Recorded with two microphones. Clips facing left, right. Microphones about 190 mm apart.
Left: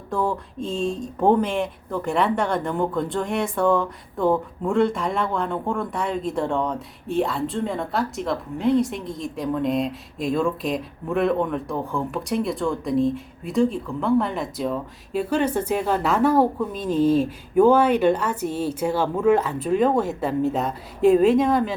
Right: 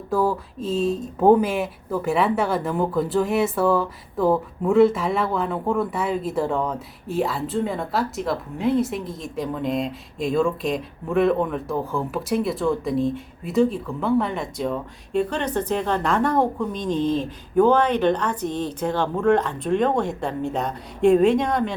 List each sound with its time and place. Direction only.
0.1 s speech: 5° right (ahead or behind)